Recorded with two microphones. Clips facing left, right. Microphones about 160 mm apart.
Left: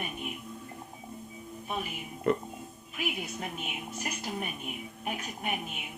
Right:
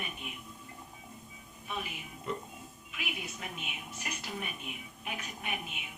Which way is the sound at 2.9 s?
40° left (ahead or behind).